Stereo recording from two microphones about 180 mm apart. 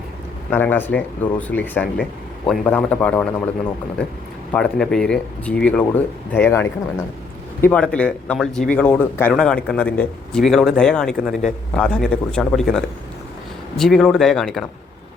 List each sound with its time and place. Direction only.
0.5 s speech: 10° left (ahead or behind)
4.5 s speech: 5° left (ahead or behind)